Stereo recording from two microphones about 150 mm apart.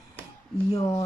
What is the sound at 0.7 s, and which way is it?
Speech, 25° left (ahead or behind).